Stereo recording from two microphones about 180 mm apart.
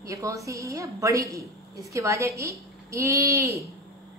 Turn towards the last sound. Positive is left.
turn(degrees=-15)  # may be behind; listen again after turning